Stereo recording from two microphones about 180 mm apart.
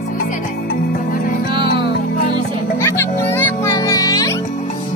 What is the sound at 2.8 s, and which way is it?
Music, 10° left (ahead or behind).